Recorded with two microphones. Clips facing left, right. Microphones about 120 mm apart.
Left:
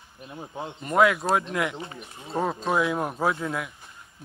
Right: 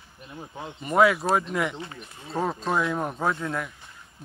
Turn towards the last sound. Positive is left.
turn(degrees=0)  # may be behind; listen again after turning